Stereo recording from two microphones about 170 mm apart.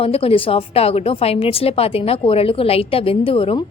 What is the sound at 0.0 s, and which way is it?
A woman's voice, 35° left (ahead or behind).